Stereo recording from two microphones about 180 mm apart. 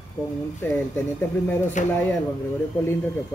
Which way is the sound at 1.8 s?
45° left (ahead or behind).